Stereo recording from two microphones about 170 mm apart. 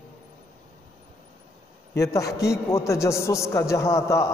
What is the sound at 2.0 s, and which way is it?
A man's voice, 20° left (ahead or behind).